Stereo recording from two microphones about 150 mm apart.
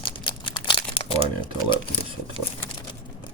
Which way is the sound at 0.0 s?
35° left (ahead or behind).